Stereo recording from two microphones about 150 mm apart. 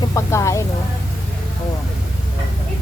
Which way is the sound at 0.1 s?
20° left (ahead or behind).